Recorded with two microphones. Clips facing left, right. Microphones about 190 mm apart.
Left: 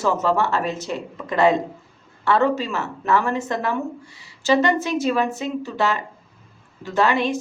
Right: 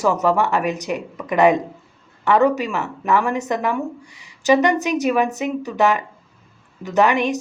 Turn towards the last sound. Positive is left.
turn(degrees=-15)  # may be behind; listen again after turning